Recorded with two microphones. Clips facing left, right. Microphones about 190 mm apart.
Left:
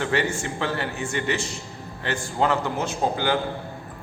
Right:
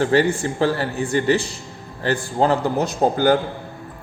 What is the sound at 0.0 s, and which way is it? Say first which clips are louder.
A man's voice: right 7 dB; 35° right (ahead or behind).